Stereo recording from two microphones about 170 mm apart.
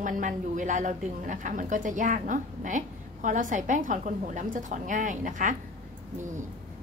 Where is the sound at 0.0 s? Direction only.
50° right (ahead or behind).